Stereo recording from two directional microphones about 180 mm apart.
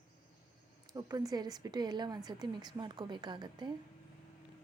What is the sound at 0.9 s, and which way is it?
Speech, 20° right (ahead or behind).